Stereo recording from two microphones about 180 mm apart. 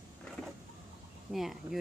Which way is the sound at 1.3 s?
Centre (ahead or behind).